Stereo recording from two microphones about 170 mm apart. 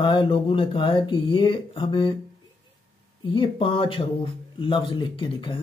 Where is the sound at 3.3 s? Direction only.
30° left (ahead or behind).